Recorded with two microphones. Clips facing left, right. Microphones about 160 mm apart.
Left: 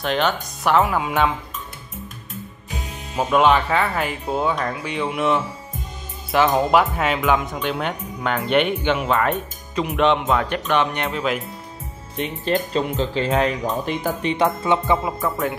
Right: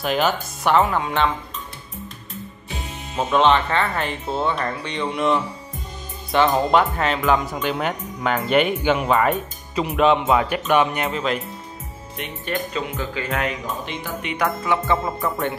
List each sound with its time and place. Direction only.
0.0 s speech: 5° right (ahead or behind)
2.7 s speech: centre (ahead or behind)
12.9 s speech: 30° left (ahead or behind)
14.3 s speech: 25° left (ahead or behind)
15.0 s speech: centre (ahead or behind)